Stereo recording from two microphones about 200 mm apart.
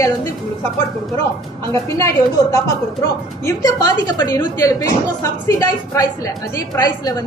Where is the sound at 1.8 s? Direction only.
15° left (ahead or behind).